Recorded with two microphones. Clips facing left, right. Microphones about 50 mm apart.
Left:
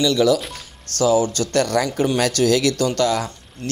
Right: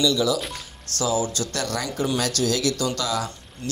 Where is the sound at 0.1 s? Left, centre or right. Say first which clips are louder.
Left 6 dB; left.